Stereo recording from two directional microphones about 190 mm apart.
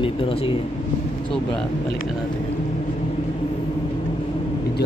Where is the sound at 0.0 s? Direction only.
30° left (ahead or behind).